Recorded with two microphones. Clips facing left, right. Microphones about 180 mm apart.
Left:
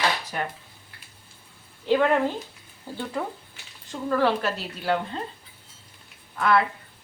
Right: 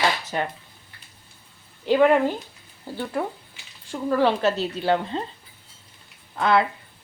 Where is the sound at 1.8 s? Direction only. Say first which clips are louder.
Right 3 dB; 15° right (ahead or behind).